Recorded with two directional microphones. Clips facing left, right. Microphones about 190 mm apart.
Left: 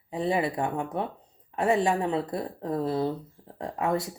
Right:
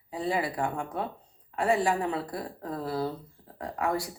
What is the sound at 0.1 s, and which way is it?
Speech, 20° left (ahead or behind).